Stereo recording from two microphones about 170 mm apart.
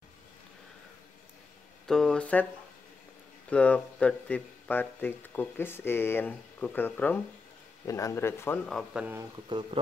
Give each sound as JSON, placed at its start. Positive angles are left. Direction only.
{"t": 1.9, "sound": "speech", "side_deg": 5}
{"t": 3.4, "sound": "speech", "side_deg": 10}
{"t": 8.6, "sound": "speech", "side_deg": 0}